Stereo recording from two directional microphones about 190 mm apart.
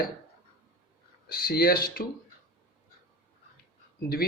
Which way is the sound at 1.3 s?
50° left (ahead or behind).